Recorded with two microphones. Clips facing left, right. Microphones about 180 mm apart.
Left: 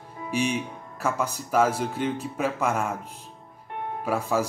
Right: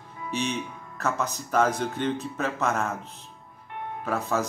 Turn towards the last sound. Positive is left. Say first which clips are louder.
# left 2 dB
turn(degrees=10)  # may be behind; listen again after turning